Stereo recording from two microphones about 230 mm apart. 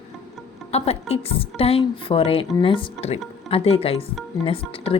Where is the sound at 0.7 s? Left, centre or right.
Left.